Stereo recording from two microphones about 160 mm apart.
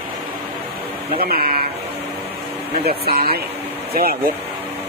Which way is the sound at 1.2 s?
70° right (ahead or behind).